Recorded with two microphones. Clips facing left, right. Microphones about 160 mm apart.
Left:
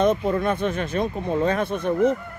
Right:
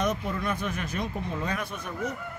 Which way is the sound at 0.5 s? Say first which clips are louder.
Left 7 dB; 30° left (ahead or behind).